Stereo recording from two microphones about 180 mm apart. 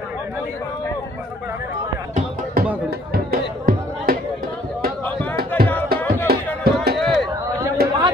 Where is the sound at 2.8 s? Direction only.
55° right (ahead or behind).